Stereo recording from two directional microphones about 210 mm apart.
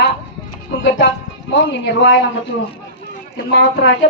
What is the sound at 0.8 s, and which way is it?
A woman's voice, 60° left (ahead or behind).